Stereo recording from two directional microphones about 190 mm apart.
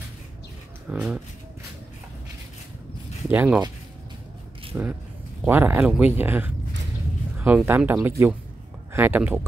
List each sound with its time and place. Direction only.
0.8 s speech: 5° right (ahead or behind)
3.3 s speech: 5° right (ahead or behind)
4.7 s speech: 5° right (ahead or behind)